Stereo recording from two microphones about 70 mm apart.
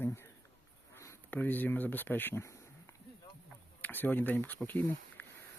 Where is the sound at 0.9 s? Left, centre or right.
Left.